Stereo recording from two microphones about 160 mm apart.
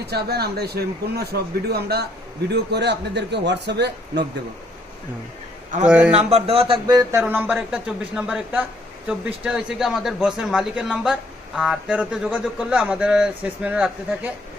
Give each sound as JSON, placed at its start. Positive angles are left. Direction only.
{"t": 0.1, "sound": "a man's voice", "side_deg": -85}
{"t": 5.8, "sound": "speech", "side_deg": -5}
{"t": 6.1, "sound": "speech", "side_deg": -40}